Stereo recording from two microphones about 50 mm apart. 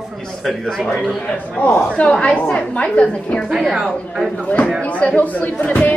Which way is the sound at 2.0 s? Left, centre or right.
Left.